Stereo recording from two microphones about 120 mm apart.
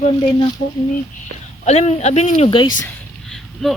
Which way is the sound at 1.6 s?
65° left (ahead or behind).